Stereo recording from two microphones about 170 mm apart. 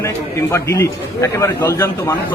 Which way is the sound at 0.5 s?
15° left (ahead or behind).